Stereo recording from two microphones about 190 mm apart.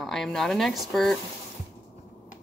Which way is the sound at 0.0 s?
Centre (ahead or behind).